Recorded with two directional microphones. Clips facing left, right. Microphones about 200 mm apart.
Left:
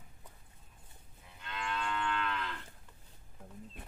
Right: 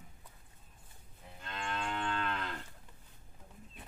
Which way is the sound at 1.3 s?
40° right (ahead or behind).